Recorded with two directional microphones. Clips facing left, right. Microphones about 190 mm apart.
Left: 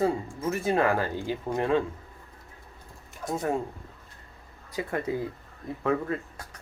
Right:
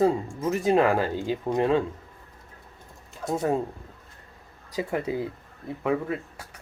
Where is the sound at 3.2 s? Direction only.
20° right (ahead or behind).